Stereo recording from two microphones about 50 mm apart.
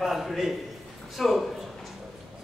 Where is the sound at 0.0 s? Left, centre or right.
Centre.